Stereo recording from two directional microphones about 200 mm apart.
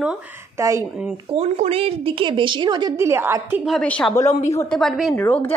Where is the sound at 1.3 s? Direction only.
30° right (ahead or behind); by 3.6 s 10° right (ahead or behind).